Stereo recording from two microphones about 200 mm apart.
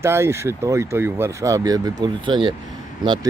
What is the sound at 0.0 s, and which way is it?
Speech, 15° right (ahead or behind).